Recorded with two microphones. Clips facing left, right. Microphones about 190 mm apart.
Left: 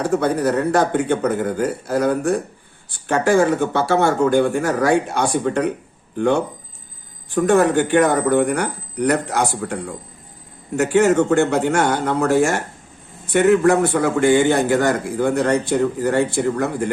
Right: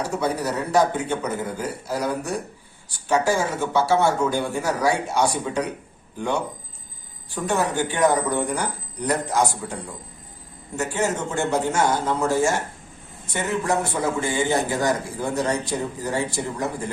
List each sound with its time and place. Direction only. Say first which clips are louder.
0.0 s a man's voice: left 6 dB; 55° left (ahead or behind)